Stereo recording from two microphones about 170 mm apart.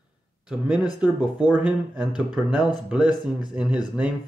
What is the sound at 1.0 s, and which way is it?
A man's voice, 5° right (ahead or behind).